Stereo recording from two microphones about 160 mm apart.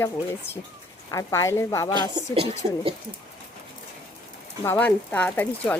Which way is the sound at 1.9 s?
30° right (ahead or behind).